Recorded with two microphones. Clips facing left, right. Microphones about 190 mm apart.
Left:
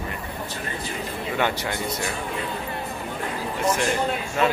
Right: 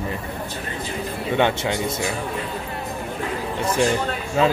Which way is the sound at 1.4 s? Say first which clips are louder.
Right 5 dB; 25° right (ahead or behind).